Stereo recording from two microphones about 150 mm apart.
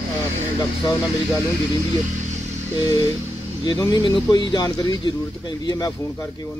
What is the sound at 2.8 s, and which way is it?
Speech, 25° left (ahead or behind).